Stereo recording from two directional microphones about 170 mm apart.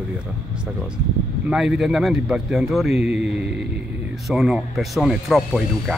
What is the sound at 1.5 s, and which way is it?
Speech, 5° right (ahead or behind).